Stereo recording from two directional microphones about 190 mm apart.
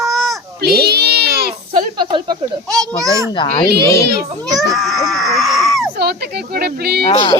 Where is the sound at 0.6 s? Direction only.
60° right (ahead or behind).